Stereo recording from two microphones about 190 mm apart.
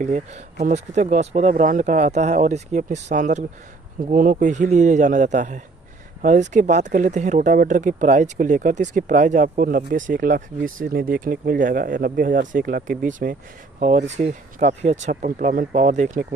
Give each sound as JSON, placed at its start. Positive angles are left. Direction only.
{"t": 0.0, "sound": "speech", "side_deg": -40}